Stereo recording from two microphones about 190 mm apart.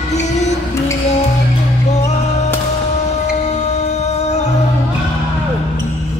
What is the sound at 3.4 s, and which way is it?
Music, 35° left (ahead or behind).